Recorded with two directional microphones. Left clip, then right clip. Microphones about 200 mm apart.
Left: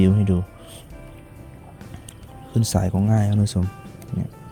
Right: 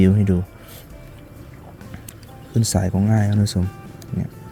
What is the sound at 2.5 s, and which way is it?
Speech, 10° left (ahead or behind).